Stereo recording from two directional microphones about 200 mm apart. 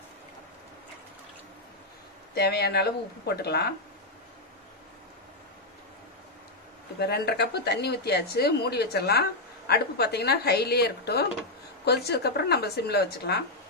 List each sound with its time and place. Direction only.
2.3 s speech: 55° left (ahead or behind)
7.0 s speech: 55° left (ahead or behind)